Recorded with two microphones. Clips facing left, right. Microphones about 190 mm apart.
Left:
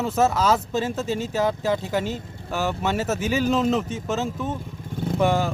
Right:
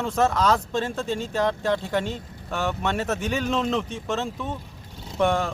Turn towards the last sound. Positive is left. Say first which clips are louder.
# left 1 dB
turn(degrees=0)  # may be behind; listen again after turning